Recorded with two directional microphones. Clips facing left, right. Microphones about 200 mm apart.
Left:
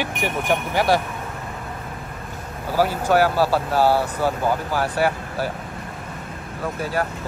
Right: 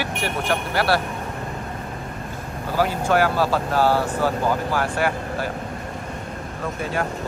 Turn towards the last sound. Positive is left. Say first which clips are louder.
# left 1 dB
turn(degrees=5)  # may be behind; listen again after turning